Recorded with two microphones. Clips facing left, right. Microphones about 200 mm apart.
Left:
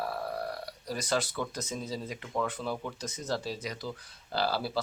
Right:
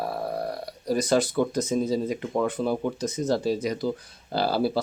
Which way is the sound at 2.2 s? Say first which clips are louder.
Right 8 dB; 25° right (ahead or behind).